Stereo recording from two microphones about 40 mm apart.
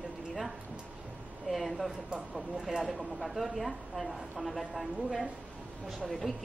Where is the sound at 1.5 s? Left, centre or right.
Centre.